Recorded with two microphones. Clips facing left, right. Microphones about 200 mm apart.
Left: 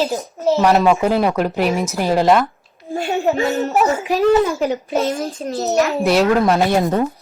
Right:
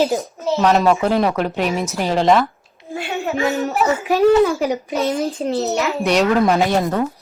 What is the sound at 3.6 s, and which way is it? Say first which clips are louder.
Speech: left 1 dB; 60° right (ahead or behind).